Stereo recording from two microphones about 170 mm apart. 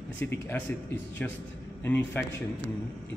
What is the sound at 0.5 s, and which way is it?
Speech, 10° left (ahead or behind).